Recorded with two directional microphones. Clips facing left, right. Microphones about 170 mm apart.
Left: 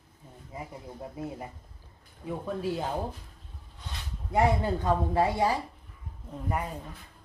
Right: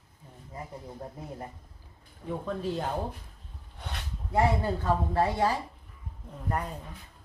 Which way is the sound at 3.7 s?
60° right (ahead or behind).